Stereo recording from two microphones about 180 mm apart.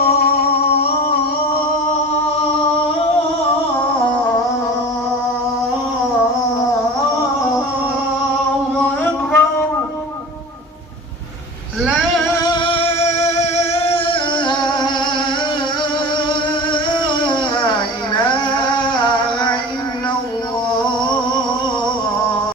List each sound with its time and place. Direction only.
0.0 s humming: 55° left (ahead or behind)
0.8 s a sound: 60° left (ahead or behind)
9.3 s music: 10° left (ahead or behind)
12.5 s music: 25° left (ahead or behind)
17.0 s music: 25° left (ahead or behind)